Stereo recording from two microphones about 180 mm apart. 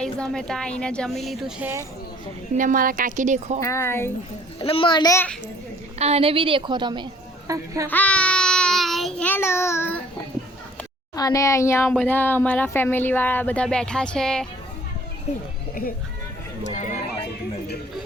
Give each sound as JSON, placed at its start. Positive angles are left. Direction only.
{"t": 0.0, "sound": "speech", "side_deg": 5}
{"t": 2.6, "sound": "a woman's voice", "side_deg": -50}
{"t": 3.6, "sound": "speech", "side_deg": 15}
{"t": 4.6, "sound": "a child's voice", "side_deg": 30}
{"t": 5.1, "sound": "speech", "side_deg": 10}
{"t": 6.0, "sound": "a woman's voice", "side_deg": -35}
{"t": 7.9, "sound": "child singing", "side_deg": 10}
{"t": 11.1, "sound": "speech", "side_deg": 20}
{"t": 16.7, "sound": "a sound", "side_deg": 40}